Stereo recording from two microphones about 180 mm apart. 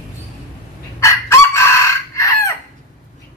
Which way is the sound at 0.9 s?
15° left (ahead or behind).